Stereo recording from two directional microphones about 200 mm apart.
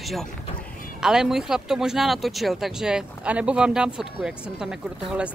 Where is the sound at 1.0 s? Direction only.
5° right (ahead or behind).